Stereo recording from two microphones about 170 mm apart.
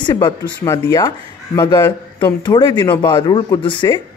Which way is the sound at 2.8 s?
15° left (ahead or behind).